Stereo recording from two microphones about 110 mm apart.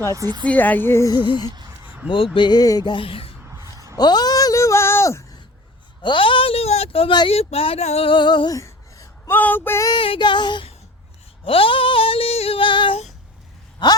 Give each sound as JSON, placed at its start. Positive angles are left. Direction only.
{"t": 0.2, "sound": "a woman's voice", "side_deg": -40}
{"t": 0.4, "sound": "speech", "side_deg": 15}
{"t": 1.1, "sound": "a sound", "side_deg": 45}
{"t": 2.0, "sound": "speech", "side_deg": 55}
{"t": 3.5, "sound": "a sound", "side_deg": -30}
{"t": 3.9, "sound": "a sound", "side_deg": 40}
{"t": 6.0, "sound": "speech", "side_deg": 50}
{"t": 8.1, "sound": "speech", "side_deg": 45}
{"t": 8.5, "sound": "a sound", "side_deg": 30}
{"t": 9.8, "sound": "speech", "side_deg": 45}
{"t": 11.4, "sound": "female singing", "side_deg": 55}
{"t": 13.8, "sound": "speech", "side_deg": 45}